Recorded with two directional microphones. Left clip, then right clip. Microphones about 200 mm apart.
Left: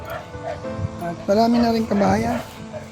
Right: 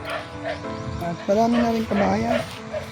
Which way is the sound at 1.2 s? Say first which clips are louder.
Left 2 dB; 10° left (ahead or behind).